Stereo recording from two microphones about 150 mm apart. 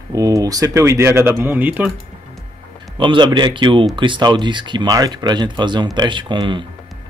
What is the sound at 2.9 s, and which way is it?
Speech, 35° right (ahead or behind).